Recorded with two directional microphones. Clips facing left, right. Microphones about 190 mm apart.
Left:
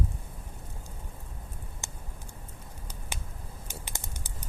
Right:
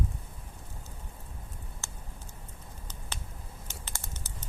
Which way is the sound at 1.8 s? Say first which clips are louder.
Left 2 dB; 15° left (ahead or behind).